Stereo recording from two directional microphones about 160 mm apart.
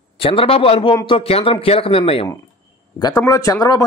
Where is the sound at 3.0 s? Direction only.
25° left (ahead or behind).